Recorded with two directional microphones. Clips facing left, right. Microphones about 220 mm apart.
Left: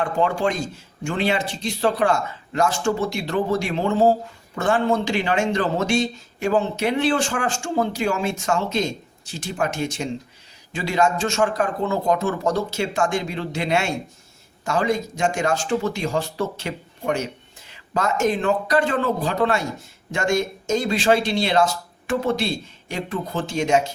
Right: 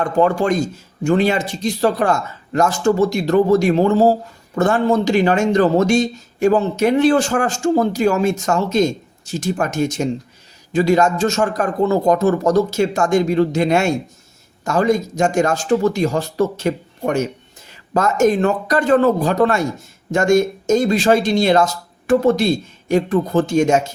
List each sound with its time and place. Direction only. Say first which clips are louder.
0.0 s speech: right 5 dB; 45° right (ahead or behind)